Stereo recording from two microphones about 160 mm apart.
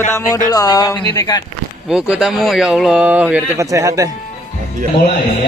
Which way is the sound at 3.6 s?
20° right (ahead or behind).